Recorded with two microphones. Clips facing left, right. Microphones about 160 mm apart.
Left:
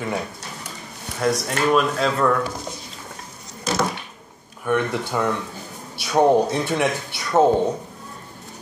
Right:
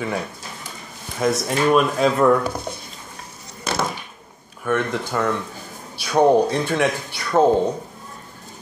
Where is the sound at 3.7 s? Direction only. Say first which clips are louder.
Left 1 dB; 60° right (ahead or behind).